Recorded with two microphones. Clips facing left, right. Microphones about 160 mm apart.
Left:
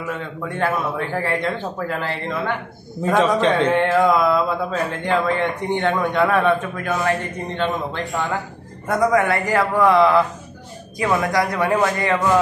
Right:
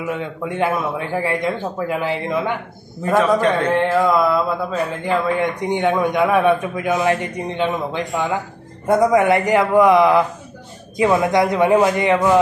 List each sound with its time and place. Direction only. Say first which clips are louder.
0.0 s speech: right 3 dB; 15° right (ahead or behind)
3.2 s a man's voice: right 1 dB; 25° left (ahead or behind)
3.6 s speech: even; 5° right (ahead or behind)